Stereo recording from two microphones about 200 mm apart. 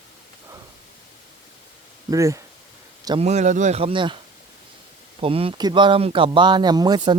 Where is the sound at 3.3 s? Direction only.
35° right (ahead or behind).